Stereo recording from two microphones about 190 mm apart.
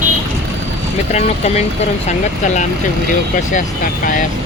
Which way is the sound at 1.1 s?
35° left (ahead or behind).